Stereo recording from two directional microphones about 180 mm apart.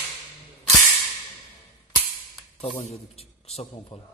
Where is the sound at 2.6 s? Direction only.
35° left (ahead or behind).